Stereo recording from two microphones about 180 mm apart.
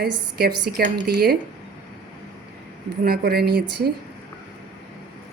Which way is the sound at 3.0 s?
60° right (ahead or behind).